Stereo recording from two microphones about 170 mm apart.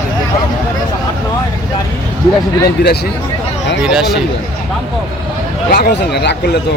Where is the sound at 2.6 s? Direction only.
70° left (ahead or behind).